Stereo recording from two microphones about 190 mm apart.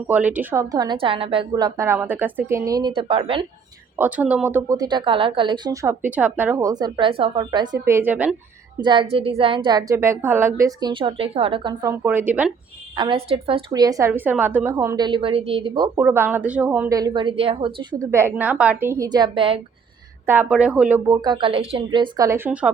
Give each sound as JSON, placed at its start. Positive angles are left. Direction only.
{"t": 0.1, "sound": "a woman's voice", "side_deg": -10}
{"t": 3.9, "sound": "speech", "side_deg": -10}
{"t": 8.8, "sound": "a woman's voice", "side_deg": -25}
{"t": 13.0, "sound": "a woman's voice", "side_deg": -30}
{"t": 14.1, "sound": "a woman's voice", "side_deg": -10}
{"t": 16.0, "sound": "speech", "side_deg": -10}
{"t": 17.0, "sound": "a woman's voice", "side_deg": -25}
{"t": 18.1, "sound": "speech", "side_deg": -15}
{"t": 20.2, "sound": "speech", "side_deg": -10}
{"t": 21.1, "sound": "a woman's voice", "side_deg": -20}